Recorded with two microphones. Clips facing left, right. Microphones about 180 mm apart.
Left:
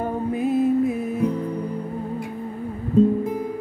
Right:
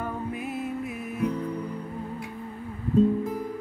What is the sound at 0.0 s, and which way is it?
Music, 30° left (ahead or behind).